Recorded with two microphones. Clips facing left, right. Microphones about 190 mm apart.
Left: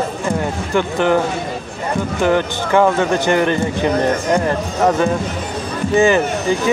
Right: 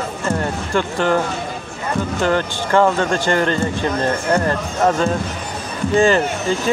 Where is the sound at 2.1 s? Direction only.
15° left (ahead or behind).